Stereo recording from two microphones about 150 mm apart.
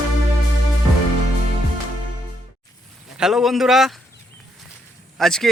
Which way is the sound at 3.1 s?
5° right (ahead or behind).